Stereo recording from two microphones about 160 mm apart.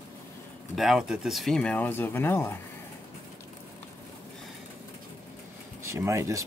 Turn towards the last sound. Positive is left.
turn(degrees=-20)  # may be behind; listen again after turning